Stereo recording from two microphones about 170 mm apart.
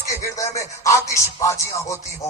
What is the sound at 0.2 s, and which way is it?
Speech, 20° left (ahead or behind).